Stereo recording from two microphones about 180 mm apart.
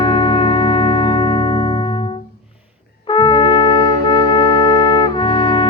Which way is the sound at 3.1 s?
25° left (ahead or behind).